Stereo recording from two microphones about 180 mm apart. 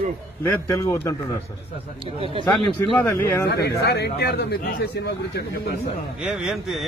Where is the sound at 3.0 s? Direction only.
15° left (ahead or behind).